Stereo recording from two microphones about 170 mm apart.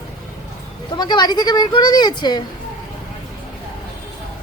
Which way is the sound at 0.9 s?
25° left (ahead or behind).